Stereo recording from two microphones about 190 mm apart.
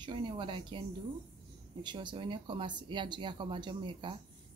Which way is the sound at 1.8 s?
25° right (ahead or behind).